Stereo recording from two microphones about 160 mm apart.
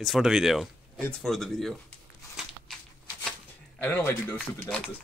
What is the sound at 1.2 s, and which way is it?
Speech, centre (ahead or behind).